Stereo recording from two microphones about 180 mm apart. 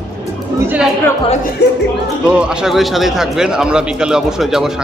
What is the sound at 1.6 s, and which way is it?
Speech, 65° left (ahead or behind).